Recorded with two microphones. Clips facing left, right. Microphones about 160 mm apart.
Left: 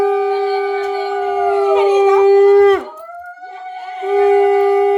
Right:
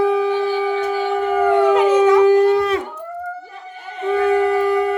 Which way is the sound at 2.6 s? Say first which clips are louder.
Left 9 dB; 55° left (ahead or behind).